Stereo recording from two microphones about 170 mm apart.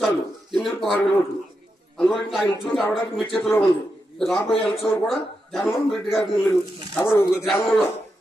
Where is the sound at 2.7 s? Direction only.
Centre (ahead or behind).